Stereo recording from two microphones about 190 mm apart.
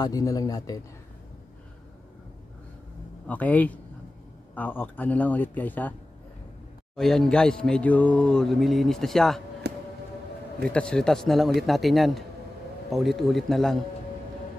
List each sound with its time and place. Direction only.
0.0 s speech: 20° left (ahead or behind)
3.3 s speech: 10° left (ahead or behind)
7.0 s speech: 5° left (ahead or behind)
9.6 s a sound: 60° right (ahead or behind)
10.7 s speech: 5° left (ahead or behind)